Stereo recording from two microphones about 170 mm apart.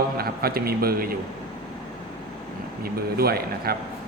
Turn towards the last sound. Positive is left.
turn(degrees=-65)  # may be behind; listen again after turning